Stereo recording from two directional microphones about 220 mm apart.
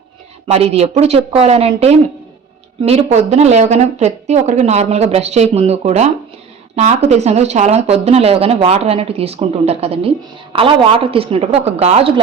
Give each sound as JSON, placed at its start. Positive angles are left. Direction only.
{"t": 0.4, "sound": "speech", "side_deg": -30}